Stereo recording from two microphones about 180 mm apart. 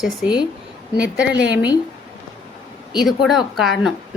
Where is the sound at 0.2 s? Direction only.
5° right (ahead or behind).